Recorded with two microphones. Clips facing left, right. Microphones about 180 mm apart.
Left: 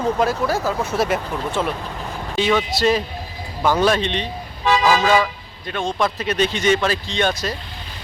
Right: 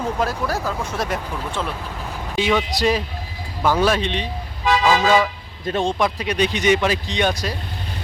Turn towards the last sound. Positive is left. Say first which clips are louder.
# even
turn(degrees=-10)  # may be behind; listen again after turning